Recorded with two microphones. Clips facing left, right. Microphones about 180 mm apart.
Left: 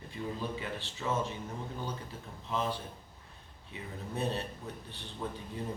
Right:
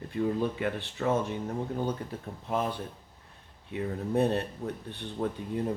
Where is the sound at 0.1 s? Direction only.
55° right (ahead or behind).